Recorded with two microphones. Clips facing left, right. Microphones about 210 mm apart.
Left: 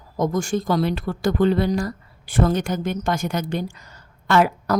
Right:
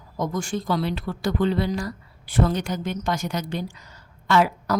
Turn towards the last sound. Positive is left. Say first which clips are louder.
# left 2 dB
turn(degrees=55)  # may be behind; listen again after turning